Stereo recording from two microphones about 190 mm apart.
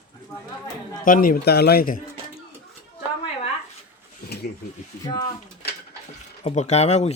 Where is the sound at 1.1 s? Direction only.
50° left (ahead or behind).